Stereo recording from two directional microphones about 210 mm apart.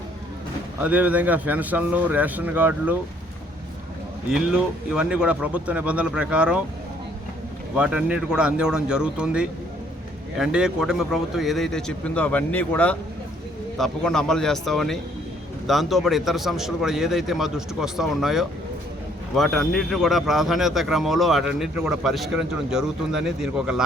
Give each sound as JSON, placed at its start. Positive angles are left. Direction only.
{"t": 0.8, "sound": "speech", "side_deg": -5}
{"t": 4.3, "sound": "speech", "side_deg": -5}
{"t": 7.8, "sound": "speech", "side_deg": -5}